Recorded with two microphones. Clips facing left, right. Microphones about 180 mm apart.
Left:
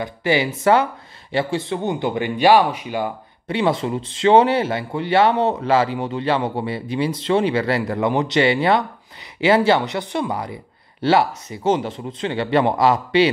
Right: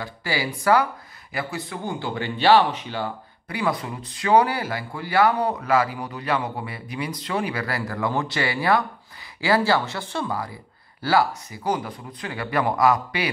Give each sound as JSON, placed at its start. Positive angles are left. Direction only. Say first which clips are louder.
{"t": 0.0, "sound": "speech", "louder": "left 8 dB", "side_deg": 20}
{"t": 3.4, "sound": "speech", "louder": "left 6 dB", "side_deg": 25}